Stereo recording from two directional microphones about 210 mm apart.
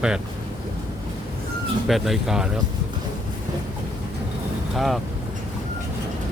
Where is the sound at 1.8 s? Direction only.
Centre (ahead or behind).